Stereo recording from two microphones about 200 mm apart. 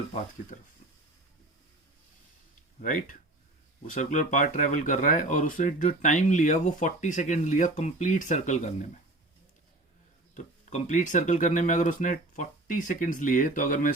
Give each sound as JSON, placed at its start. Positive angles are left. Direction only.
{"t": 2.8, "sound": "speech", "side_deg": 40}
{"t": 10.3, "sound": "speech", "side_deg": 35}